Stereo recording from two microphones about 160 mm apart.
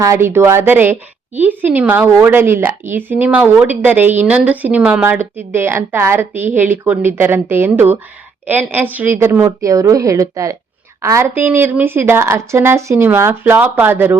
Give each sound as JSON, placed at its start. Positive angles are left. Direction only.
{"t": 0.0, "sound": "a woman's voice", "side_deg": -15}